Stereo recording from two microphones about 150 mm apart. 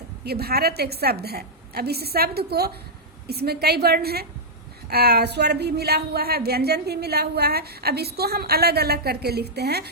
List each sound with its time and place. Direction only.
0.3 s speech: 90° right